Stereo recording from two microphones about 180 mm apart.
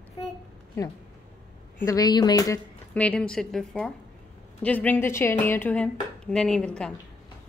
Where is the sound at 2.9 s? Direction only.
5° left (ahead or behind).